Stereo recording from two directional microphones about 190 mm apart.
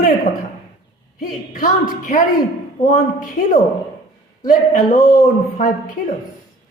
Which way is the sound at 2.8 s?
40° left (ahead or behind).